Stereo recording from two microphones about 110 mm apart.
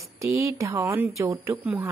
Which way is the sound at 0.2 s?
25° right (ahead or behind).